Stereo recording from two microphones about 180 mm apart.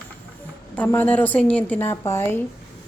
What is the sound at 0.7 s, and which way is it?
A woman's voice, 10° left (ahead or behind).